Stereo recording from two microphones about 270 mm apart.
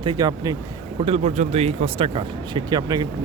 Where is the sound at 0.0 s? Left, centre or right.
Centre.